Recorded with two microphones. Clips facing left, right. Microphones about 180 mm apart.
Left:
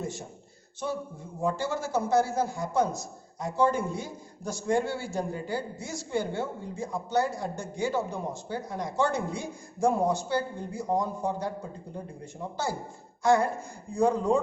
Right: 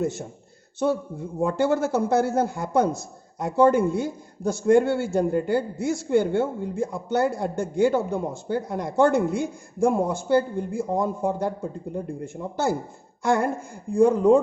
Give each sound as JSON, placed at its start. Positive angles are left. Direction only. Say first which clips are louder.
{"t": 1.4, "sound": "a man's voice", "louder": "right 8 dB", "side_deg": -60}